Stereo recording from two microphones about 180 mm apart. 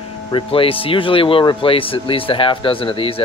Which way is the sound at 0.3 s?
30° left (ahead or behind).